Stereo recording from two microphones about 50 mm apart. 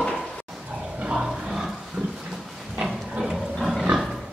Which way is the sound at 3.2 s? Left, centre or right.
Centre.